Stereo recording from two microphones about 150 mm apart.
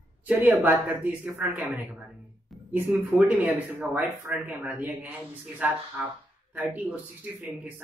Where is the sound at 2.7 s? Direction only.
15° right (ahead or behind).